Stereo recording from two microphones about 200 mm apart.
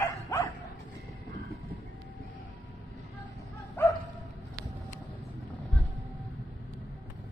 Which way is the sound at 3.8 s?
10° left (ahead or behind).